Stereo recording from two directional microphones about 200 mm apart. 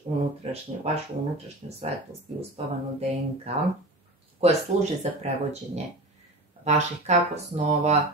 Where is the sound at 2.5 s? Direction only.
30° right (ahead or behind).